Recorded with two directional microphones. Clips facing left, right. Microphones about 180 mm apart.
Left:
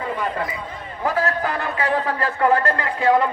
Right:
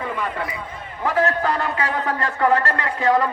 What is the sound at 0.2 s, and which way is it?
Speech, 35° left (ahead or behind).